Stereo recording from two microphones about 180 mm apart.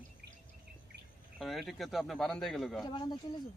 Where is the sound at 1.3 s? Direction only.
Centre (ahead or behind).